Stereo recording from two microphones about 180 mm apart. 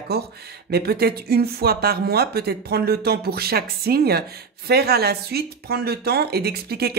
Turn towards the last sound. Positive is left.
turn(degrees=-60)  # may be behind; listen again after turning